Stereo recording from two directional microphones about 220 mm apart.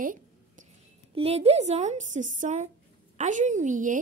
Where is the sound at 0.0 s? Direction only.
35° right (ahead or behind).